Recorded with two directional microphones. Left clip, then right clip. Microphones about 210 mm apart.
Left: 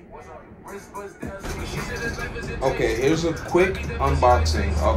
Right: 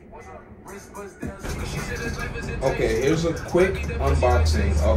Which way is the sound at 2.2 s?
25° right (ahead or behind).